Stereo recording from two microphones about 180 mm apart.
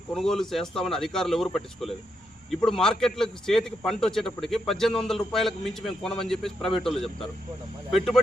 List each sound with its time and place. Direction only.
0.1 s a man's voice: centre (ahead or behind)